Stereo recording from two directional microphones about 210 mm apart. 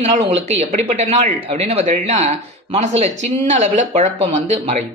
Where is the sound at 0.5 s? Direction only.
30° right (ahead or behind).